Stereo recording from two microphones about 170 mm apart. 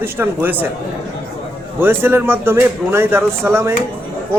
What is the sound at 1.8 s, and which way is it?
A man's voice, 15° right (ahead or behind).